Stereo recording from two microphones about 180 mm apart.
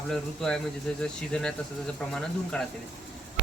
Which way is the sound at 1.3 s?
5° left (ahead or behind).